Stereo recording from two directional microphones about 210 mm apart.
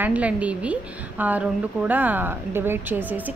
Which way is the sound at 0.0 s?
5° right (ahead or behind).